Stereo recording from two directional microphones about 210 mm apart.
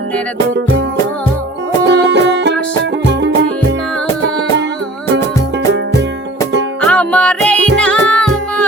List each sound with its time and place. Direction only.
1.8 s music: 55° right (ahead or behind)
6.8 s music: 5° left (ahead or behind)